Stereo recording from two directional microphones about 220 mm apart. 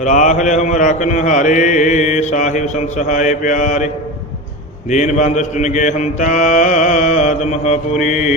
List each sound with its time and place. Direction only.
0.0 s mantra: 35° left (ahead or behind)
4.9 s mantra: 35° left (ahead or behind)